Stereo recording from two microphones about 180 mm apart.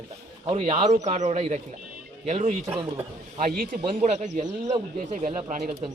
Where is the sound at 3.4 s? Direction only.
50° right (ahead or behind).